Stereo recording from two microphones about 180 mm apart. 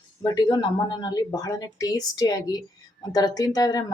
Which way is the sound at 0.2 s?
20° left (ahead or behind).